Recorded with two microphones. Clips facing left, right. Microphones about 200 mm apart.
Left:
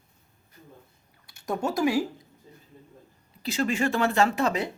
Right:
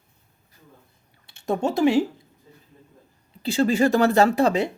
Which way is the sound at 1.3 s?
25° right (ahead or behind).